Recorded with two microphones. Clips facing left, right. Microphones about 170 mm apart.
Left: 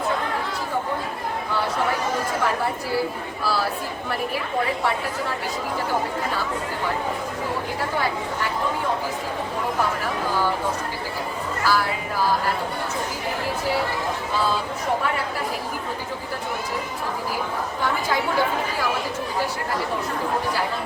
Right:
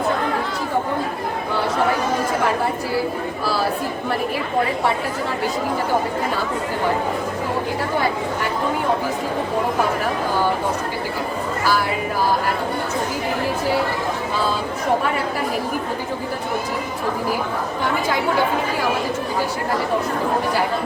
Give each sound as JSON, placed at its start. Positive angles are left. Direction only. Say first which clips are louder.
{"t": 11.6, "sound": "speech", "louder": "right 1 dB", "side_deg": -15}